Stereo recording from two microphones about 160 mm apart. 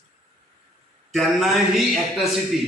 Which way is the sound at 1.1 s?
Centre (ahead or behind).